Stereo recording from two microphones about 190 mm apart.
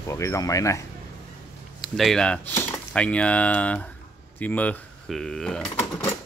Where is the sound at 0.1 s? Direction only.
15° left (ahead or behind).